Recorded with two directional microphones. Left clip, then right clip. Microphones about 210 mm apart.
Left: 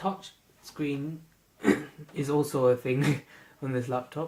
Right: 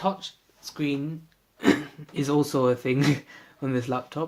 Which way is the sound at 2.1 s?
40° right (ahead or behind).